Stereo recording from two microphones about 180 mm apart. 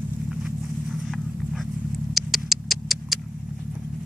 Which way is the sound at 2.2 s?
Centre (ahead or behind).